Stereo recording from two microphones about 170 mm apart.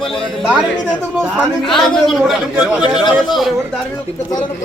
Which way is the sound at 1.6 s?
Centre (ahead or behind).